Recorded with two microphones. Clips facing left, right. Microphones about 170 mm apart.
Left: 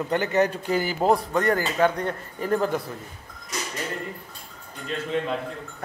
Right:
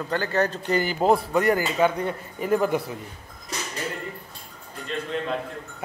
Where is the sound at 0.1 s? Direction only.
20° left (ahead or behind).